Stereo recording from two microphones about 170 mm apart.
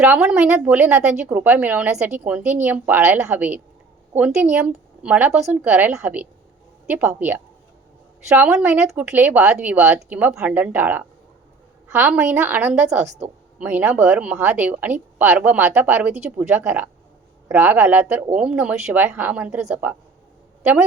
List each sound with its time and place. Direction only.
0.0 s speech: 5° right (ahead or behind)
12.8 s a woman's voice: 40° right (ahead or behind)
13.6 s a woman's voice: 10° right (ahead or behind)